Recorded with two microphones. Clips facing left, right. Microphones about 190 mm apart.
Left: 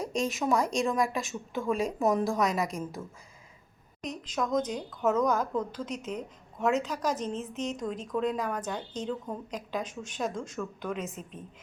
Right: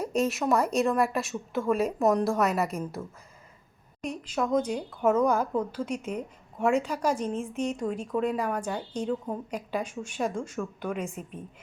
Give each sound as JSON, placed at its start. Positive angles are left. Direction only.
{"t": 0.0, "sound": "a woman's voice", "side_deg": -5}